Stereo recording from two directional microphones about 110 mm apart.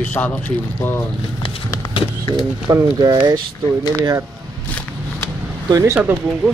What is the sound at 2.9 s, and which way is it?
Speech, 40° right (ahead or behind).